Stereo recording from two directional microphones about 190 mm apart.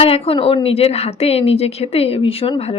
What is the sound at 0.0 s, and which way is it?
A woman's voice, 30° left (ahead or behind).